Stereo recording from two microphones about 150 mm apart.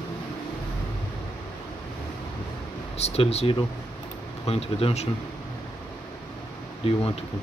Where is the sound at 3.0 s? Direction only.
45° left (ahead or behind).